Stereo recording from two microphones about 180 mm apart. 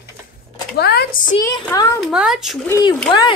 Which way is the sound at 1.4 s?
20° left (ahead or behind).